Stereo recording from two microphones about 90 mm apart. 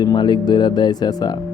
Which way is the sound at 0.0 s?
55° left (ahead or behind).